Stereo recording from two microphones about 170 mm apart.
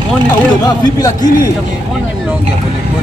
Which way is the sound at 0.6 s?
25° left (ahead or behind).